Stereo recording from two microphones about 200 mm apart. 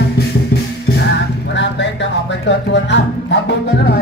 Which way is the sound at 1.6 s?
65° left (ahead or behind).